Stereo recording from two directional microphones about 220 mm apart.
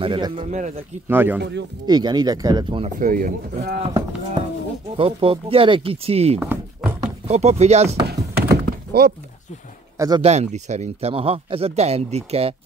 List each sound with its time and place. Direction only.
0.0 s a man's voice: 20° right (ahead or behind)
1.0 s speech: 10° right (ahead or behind)
3.0 s speech: 40° right (ahead or behind)
4.9 s a man's voice: 25° right (ahead or behind)
6.4 s a sound: 5° right (ahead or behind)
7.2 s a man's voice: 30° right (ahead or behind)
8.1 s thunk: 45° right (ahead or behind)
9.9 s speech: 15° right (ahead or behind)
10.2 s a man's voice: 30° right (ahead or behind)